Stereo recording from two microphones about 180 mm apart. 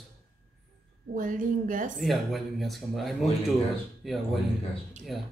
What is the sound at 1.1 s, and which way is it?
Speech, 50° right (ahead or behind).